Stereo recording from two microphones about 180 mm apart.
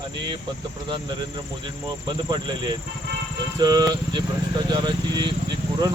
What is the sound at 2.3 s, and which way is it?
Speech, 25° right (ahead or behind).